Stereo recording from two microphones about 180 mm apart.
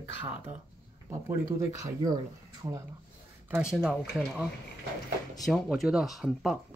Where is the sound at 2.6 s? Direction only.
20° right (ahead or behind).